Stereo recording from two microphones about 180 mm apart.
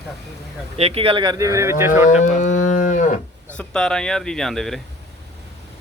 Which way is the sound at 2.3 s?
45° left (ahead or behind).